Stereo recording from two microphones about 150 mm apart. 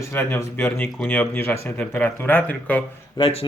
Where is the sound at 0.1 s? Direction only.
15° left (ahead or behind).